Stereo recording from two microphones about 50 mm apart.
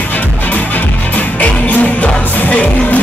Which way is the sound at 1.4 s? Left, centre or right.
Left.